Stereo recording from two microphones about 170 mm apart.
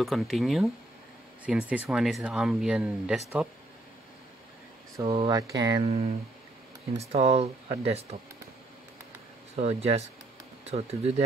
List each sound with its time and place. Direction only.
0.0 s speech: centre (ahead or behind)
4.9 s speech: 25° right (ahead or behind)
5.8 s speech: 35° right (ahead or behind)
9.6 s speech: 40° right (ahead or behind)